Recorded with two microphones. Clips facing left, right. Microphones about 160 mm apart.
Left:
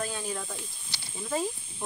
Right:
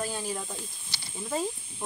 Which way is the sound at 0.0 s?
10° right (ahead or behind).